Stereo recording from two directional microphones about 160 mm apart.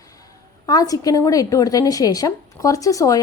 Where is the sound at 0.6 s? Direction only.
25° left (ahead or behind).